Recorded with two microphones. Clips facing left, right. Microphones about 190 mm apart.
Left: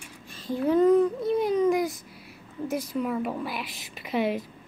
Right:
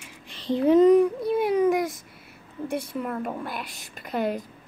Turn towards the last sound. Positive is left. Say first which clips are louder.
# left 1 dB
turn(degrees=0)  # may be behind; listen again after turning